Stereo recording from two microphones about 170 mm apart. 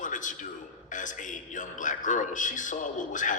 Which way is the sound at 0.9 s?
50° left (ahead or behind).